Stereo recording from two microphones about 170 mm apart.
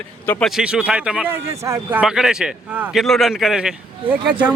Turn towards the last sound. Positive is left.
turn(degrees=-5)  # may be behind; listen again after turning